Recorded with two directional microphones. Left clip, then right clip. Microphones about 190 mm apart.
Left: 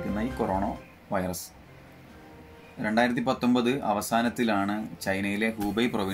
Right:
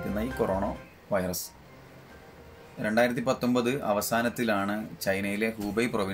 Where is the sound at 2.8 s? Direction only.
15° right (ahead or behind).